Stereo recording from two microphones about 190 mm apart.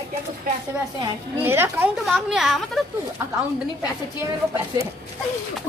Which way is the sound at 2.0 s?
Centre (ahead or behind).